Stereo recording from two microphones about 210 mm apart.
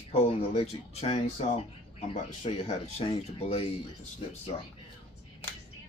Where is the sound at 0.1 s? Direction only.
30° left (ahead or behind).